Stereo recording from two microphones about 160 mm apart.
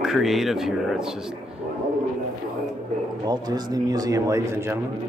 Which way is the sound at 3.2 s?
25° right (ahead or behind).